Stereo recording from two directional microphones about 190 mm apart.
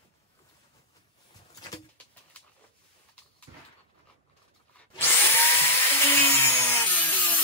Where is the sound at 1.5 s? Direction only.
20° left (ahead or behind).